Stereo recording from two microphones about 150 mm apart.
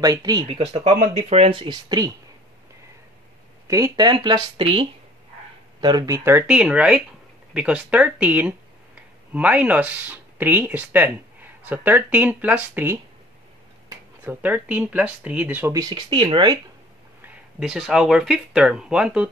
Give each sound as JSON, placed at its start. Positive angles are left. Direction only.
{"t": 0.0, "sound": "speech", "side_deg": -25}
{"t": 0.8, "sound": "speech", "side_deg": -50}
{"t": 3.6, "sound": "speech", "side_deg": -20}
{"t": 15.8, "sound": "speech", "side_deg": -30}
{"t": 17.6, "sound": "speech", "side_deg": -5}